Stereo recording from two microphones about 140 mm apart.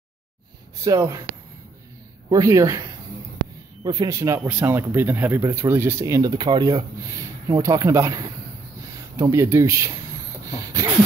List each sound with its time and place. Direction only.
0.8 s speech: 25° right (ahead or behind)
2.2 s speech: 25° right (ahead or behind)
10.4 s a sound: 25° right (ahead or behind)